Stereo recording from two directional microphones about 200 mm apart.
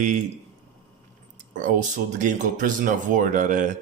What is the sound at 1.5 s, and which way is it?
Speech, 40° right (ahead or behind).